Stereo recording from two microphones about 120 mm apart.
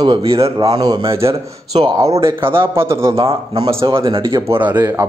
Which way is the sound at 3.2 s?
50° right (ahead or behind).